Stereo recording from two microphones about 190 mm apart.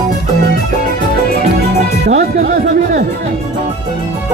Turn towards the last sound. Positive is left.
turn(degrees=-45)  # may be behind; listen again after turning